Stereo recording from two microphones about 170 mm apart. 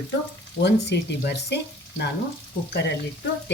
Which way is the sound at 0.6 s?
75° left (ahead or behind).